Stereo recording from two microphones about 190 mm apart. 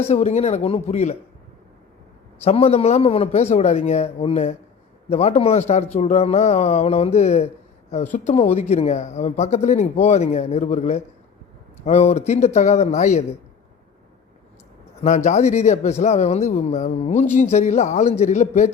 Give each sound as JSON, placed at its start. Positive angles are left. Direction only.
{"t": 0.0, "sound": "speech", "side_deg": 35}
{"t": 2.4, "sound": "speech", "side_deg": 30}
{"t": 15.0, "sound": "speech", "side_deg": 35}